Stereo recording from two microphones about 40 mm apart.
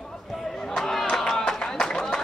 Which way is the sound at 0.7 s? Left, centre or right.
Centre.